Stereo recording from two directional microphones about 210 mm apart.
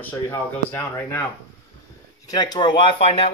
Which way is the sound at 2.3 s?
20° left (ahead or behind).